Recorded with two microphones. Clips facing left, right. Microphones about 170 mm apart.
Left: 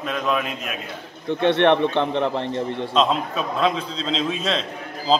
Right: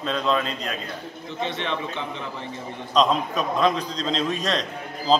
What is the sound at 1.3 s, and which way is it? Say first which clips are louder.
A man's voice: left 12 dB; 65° left (ahead or behind).